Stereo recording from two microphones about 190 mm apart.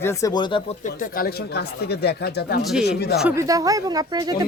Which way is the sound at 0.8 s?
45° left (ahead or behind).